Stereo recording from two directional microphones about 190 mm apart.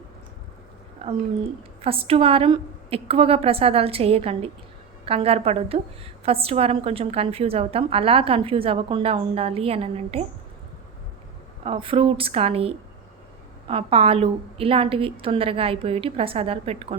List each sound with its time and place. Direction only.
1.0 s a woman's voice: 30° right (ahead or behind)
11.6 s a woman's voice: 30° right (ahead or behind)